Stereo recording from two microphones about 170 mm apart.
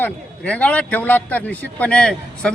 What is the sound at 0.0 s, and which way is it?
A man's voice, 10° left (ahead or behind).